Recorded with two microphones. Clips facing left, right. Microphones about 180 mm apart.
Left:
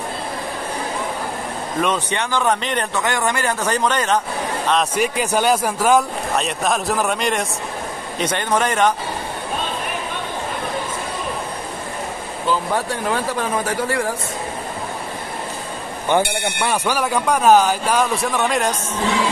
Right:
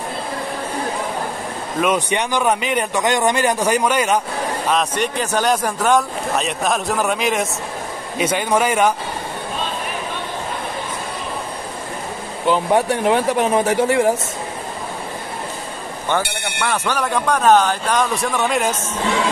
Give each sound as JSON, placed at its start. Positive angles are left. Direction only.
{"t": 1.8, "sound": "speech", "side_deg": -10}
{"t": 3.0, "sound": "speech", "side_deg": -20}
{"t": 4.9, "sound": "speech", "side_deg": 10}
{"t": 12.4, "sound": "speech", "side_deg": -20}
{"t": 16.6, "sound": "speech", "side_deg": 10}